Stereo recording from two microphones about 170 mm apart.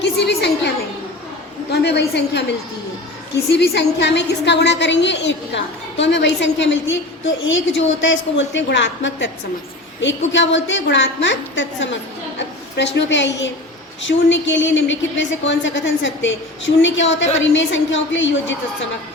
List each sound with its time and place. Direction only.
0.0 s a sound: 75° left (ahead or behind)
1.7 s a woman's voice: 75° left (ahead or behind)
3.5 s a woman's voice: 70° left (ahead or behind); by 18.5 s 90° left